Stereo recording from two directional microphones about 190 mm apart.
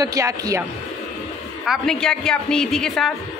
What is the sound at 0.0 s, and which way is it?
Speech, 20° right (ahead or behind).